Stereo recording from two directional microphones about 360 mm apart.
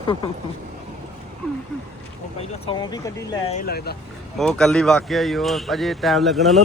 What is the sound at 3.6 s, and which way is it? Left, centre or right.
Speech, left.